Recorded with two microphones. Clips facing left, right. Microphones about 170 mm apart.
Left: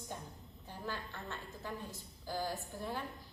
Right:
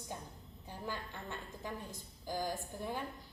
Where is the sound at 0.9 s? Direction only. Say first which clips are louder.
Even; 15° right (ahead or behind).